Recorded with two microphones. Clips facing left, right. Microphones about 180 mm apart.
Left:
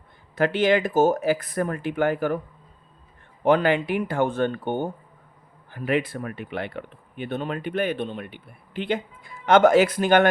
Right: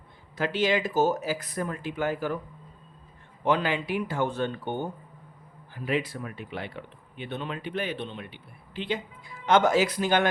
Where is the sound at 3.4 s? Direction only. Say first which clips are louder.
Left 6 dB; 55° left (ahead or behind).